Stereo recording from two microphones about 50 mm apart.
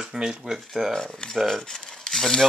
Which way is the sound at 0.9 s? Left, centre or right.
Centre.